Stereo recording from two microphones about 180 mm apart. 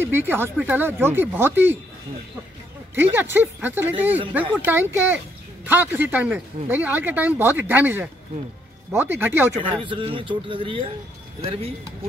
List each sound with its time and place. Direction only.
0.0 s speech: 10° right (ahead or behind)
3.0 s speech: 10° right (ahead or behind)
9.5 s speech: 30° right (ahead or behind)